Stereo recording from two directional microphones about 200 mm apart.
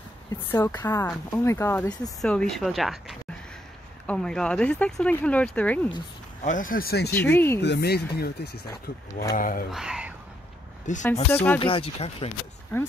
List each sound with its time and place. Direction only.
0.5 s speech: 10° left (ahead or behind)
2.2 s speech: 5° left (ahead or behind)
6.4 s speech: 40° left (ahead or behind)
7.2 s speech: 10° left (ahead or behind)
7.6 s speech: 55° left (ahead or behind)
9.7 s whispering: 5° right (ahead or behind)
10.9 s speech: 40° left (ahead or behind)
11.2 s speech: 10° left (ahead or behind)
11.6 s speech: 30° left (ahead or behind)